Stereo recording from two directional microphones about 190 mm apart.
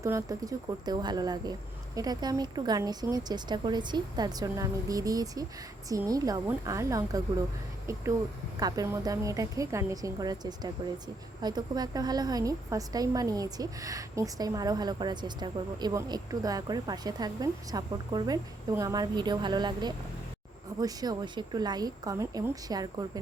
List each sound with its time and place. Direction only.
0.0 s a woman's voice: 15° right (ahead or behind)